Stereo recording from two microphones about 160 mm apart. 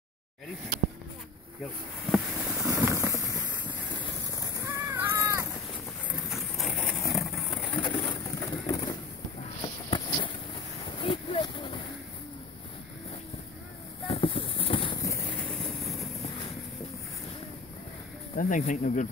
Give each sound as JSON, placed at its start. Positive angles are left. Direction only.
{"t": 2.0, "sound": "vehicle", "side_deg": 0}
{"t": 2.7, "sound": "a sound", "side_deg": -15}
{"t": 4.4, "sound": "cat", "side_deg": -20}
{"t": 6.3, "sound": "a sound", "side_deg": 0}
{"t": 7.2, "sound": "vehicle", "side_deg": 0}
{"t": 8.0, "sound": "vehicle", "side_deg": 30}
{"t": 9.6, "sound": "a sound", "side_deg": 30}
{"t": 14.0, "sound": "clip-clop", "side_deg": 35}
{"t": 15.0, "sound": "vehicle", "side_deg": 15}
{"t": 18.3, "sound": "speech", "side_deg": 55}